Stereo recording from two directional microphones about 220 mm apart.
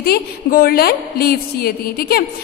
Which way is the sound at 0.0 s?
45° left (ahead or behind).